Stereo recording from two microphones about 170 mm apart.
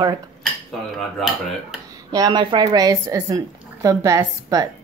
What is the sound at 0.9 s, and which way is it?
Dishes, centre (ahead or behind).